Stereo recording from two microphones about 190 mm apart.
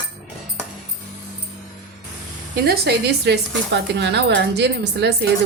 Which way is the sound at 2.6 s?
60° right (ahead or behind).